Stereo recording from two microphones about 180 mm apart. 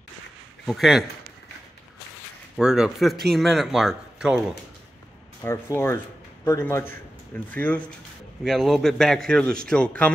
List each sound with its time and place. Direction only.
0.7 s a man's voice: centre (ahead or behind)
2.5 s a man's voice: 5° right (ahead or behind)
5.4 s a man's voice: 15° left (ahead or behind)